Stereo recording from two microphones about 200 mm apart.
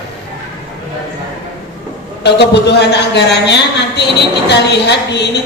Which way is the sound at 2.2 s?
60° left (ahead or behind).